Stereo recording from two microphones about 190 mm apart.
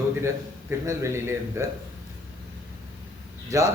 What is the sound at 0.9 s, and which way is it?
Speech, 15° right (ahead or behind).